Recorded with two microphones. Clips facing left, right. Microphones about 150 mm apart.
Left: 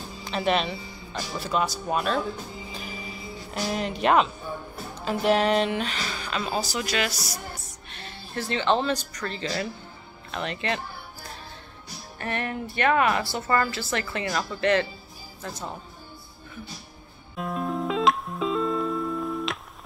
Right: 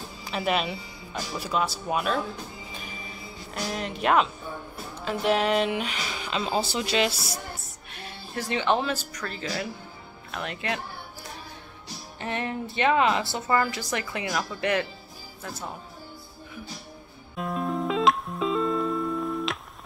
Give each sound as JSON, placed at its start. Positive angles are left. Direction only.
{"t": 0.2, "sound": "speech", "side_deg": -5}
{"t": 3.5, "sound": "speech", "side_deg": 5}
{"t": 7.9, "sound": "speech", "side_deg": -10}
{"t": 12.2, "sound": "a woman's voice", "side_deg": -15}
{"t": 17.4, "sound": "music", "side_deg": 0}